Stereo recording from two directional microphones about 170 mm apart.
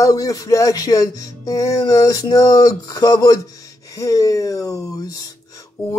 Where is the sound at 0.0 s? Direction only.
20° left (ahead or behind).